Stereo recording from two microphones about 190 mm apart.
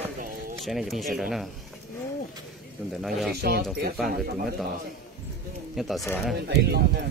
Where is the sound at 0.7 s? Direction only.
Centre (ahead or behind).